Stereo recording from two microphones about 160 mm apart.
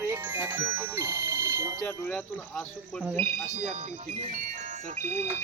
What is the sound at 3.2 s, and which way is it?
Speech, 35° right (ahead or behind).